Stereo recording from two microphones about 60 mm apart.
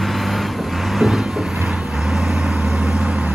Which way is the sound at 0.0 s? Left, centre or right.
Centre.